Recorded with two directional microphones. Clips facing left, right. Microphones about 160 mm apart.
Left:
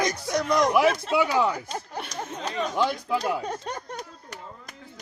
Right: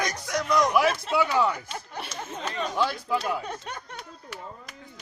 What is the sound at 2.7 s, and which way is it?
Speech, 15° left (ahead or behind).